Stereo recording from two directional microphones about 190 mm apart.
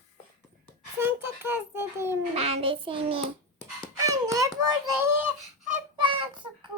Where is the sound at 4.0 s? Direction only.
15° right (ahead or behind).